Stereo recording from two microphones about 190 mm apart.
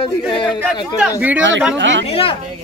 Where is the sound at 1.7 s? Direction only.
70° right (ahead or behind).